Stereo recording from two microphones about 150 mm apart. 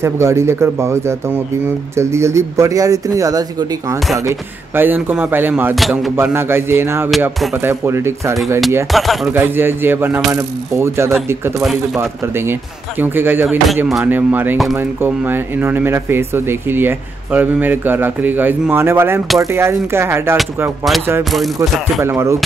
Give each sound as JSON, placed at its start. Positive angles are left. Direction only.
{"t": 0.0, "sound": "speech", "side_deg": -20}
{"t": 5.8, "sound": "speech", "side_deg": 0}
{"t": 6.1, "sound": "speech", "side_deg": -15}
{"t": 8.9, "sound": "speech", "side_deg": 0}
{"t": 9.3, "sound": "speech", "side_deg": -15}
{"t": 21.2, "sound": "speech", "side_deg": 0}
{"t": 22.0, "sound": "speech", "side_deg": -15}